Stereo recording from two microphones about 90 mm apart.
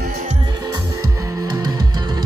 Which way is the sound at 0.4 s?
50° right (ahead or behind).